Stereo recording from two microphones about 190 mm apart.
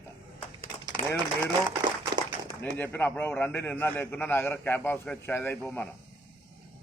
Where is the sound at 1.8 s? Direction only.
25° right (ahead or behind).